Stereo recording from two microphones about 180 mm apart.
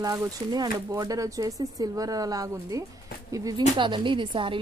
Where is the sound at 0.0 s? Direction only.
20° right (ahead or behind).